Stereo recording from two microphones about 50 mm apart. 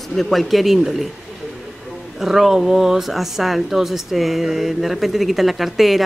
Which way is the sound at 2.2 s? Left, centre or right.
Centre.